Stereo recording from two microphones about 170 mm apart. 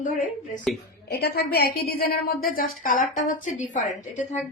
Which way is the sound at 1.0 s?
70° left (ahead or behind).